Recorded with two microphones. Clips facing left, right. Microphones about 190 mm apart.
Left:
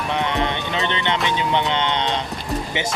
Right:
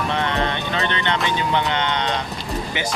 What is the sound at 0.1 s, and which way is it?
Vehicle, 15° left (ahead or behind).